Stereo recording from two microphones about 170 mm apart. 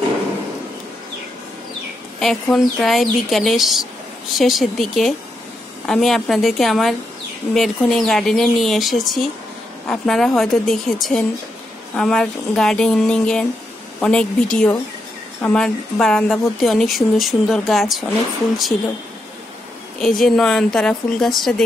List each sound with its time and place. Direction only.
2.1 s speech: centre (ahead or behind)
20.0 s speech: centre (ahead or behind)